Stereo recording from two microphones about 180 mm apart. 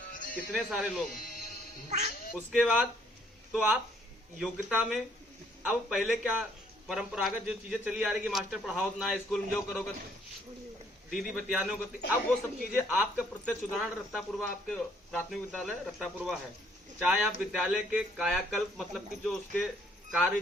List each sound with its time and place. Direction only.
0.1 s music: 50° left (ahead or behind)
0.5 s a man's voice: centre (ahead or behind)
1.1 s music: 55° left (ahead or behind)
1.9 s speech: 40° right (ahead or behind)
2.5 s a man's voice: 5° right (ahead or behind)
11.1 s a man's voice: centre (ahead or behind)
13.1 s a man's voice: 10° left (ahead or behind)